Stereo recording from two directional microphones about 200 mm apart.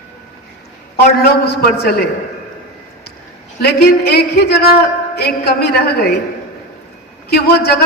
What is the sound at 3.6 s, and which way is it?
Speech, 55° left (ahead or behind).